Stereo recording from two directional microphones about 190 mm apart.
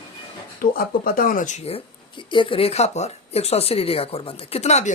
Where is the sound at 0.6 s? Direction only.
50° left (ahead or behind).